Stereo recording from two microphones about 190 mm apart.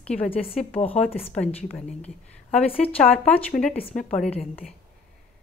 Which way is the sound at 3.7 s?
30° left (ahead or behind).